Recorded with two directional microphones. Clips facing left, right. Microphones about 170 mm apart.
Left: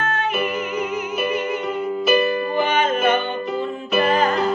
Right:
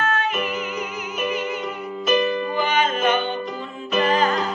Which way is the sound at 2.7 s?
55° left (ahead or behind).